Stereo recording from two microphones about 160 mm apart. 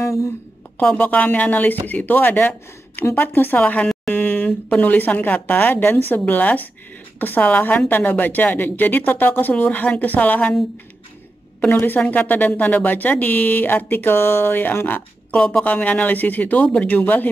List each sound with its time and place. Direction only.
0.0 s a sound: 15° left (ahead or behind)
0.7 s speech: 10° left (ahead or behind)
11.6 s speech: 10° left (ahead or behind)